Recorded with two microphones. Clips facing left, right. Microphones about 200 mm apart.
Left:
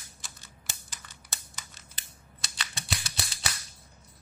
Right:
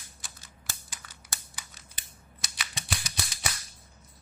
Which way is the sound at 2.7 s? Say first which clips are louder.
Right 1 dB; 15° right (ahead or behind).